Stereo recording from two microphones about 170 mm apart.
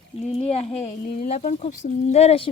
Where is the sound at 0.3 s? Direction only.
35° left (ahead or behind).